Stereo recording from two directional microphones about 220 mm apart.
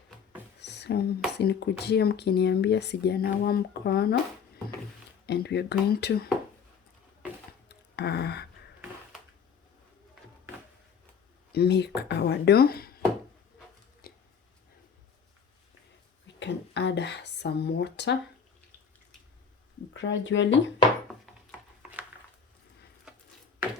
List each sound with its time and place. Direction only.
0.6 s a sound: 50° left (ahead or behind)
1.3 s speech: 50° left (ahead or behind)
5.2 s speech: 45° left (ahead or behind)
7.7 s gasp: 50° left (ahead or behind)
11.5 s speech: 50° left (ahead or behind)
14.0 s a sound: 45° left (ahead or behind)
16.2 s speech: 55° left (ahead or behind)
19.9 s speech: 55° left (ahead or behind)